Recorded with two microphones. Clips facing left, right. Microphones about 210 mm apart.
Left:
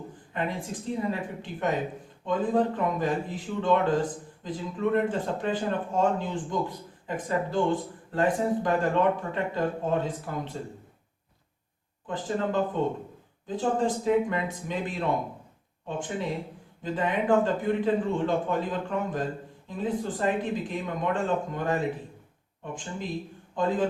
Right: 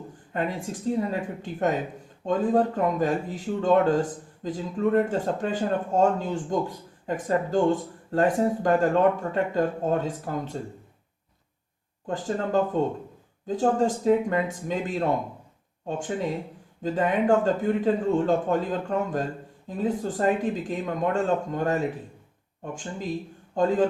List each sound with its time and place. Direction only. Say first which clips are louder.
0.3 s a man's voice: right 3 dB; 45° right (ahead or behind)
12.0 s a man's voice: right 1 dB; 45° right (ahead or behind)
16.8 s a man's voice: right 4 dB; 45° right (ahead or behind)